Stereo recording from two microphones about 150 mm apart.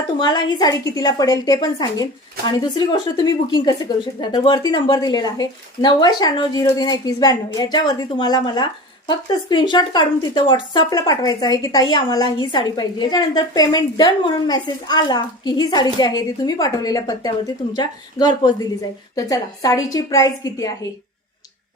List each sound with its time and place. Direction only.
0.2 s speech: 30° left (ahead or behind)